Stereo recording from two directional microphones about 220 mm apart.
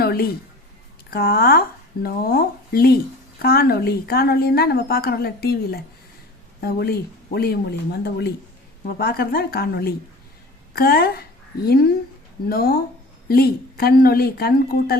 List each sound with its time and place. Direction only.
0.0 s music: 45° left (ahead or behind)
1.1 s speech: 45° left (ahead or behind)
9.0 s speech: 45° left (ahead or behind)